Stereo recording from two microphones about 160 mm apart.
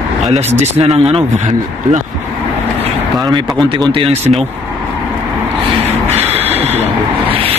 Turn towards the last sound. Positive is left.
turn(degrees=-40)  # may be behind; listen again after turning